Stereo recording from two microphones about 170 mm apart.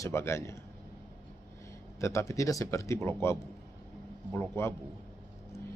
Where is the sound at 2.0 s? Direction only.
15° left (ahead or behind).